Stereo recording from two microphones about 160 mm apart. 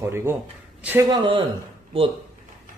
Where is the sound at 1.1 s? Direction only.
30° right (ahead or behind).